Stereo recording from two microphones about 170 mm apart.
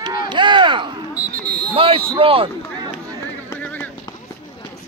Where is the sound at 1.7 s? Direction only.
35° right (ahead or behind).